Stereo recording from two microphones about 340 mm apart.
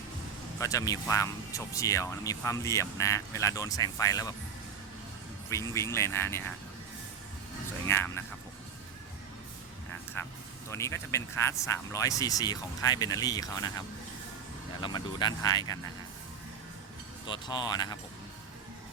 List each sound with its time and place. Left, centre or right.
0.6 s speech: centre
5.5 s speech: centre
7.9 s speech: centre
10.2 s speech: centre
17.2 s speech: centre